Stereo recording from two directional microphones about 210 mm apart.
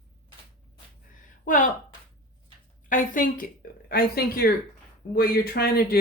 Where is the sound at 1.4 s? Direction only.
40° left (ahead or behind).